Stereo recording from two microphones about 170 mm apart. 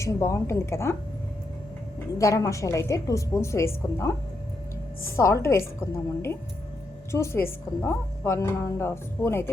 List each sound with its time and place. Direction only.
0.0 s speech: 15° left (ahead or behind)
2.1 s speech: 20° left (ahead or behind)
5.1 s speech: 15° left (ahead or behind)